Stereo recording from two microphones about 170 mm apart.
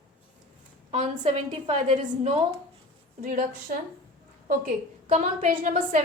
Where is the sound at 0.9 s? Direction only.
40° right (ahead or behind).